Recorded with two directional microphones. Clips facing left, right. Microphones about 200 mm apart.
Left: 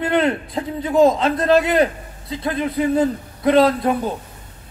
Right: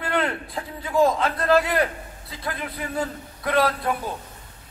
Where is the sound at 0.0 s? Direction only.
20° left (ahead or behind).